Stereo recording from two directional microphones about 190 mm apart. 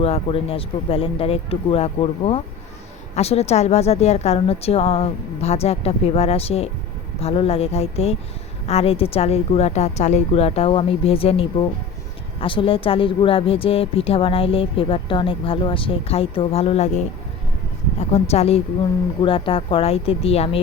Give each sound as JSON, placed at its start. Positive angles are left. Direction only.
{"t": 0.0, "sound": "a woman's voice", "side_deg": 30}
{"t": 18.1, "sound": "a woman's voice", "side_deg": 30}